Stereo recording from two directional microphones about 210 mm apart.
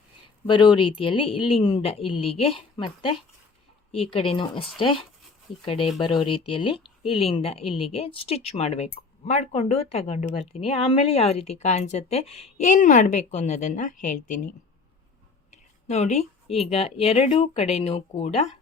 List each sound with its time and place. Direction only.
0.4 s speech: 20° left (ahead or behind)
15.4 s a sound: 35° left (ahead or behind)
16.6 s speech: 30° left (ahead or behind)